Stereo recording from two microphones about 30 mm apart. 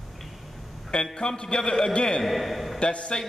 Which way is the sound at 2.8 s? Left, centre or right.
Left.